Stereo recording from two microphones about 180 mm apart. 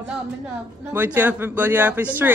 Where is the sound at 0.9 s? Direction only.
10° right (ahead or behind).